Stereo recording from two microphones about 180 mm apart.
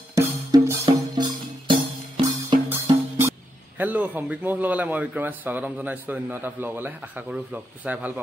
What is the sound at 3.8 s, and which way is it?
A man's voice, 10° right (ahead or behind).